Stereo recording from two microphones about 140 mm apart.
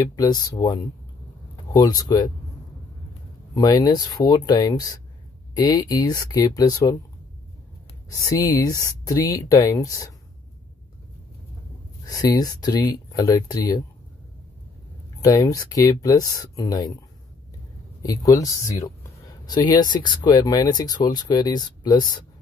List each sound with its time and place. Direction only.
0.0 s speech: 25° left (ahead or behind)
3.5 s speech: 30° left (ahead or behind)
8.1 s speech: 25° left (ahead or behind)
12.1 s speech: 25° left (ahead or behind)
15.2 s speech: 25° left (ahead or behind)
18.0 s speech: 25° left (ahead or behind)